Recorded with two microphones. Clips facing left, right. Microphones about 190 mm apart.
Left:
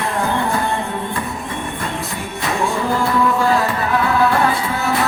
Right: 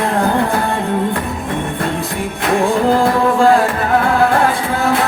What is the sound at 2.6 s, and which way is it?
Music, 55° right (ahead or behind).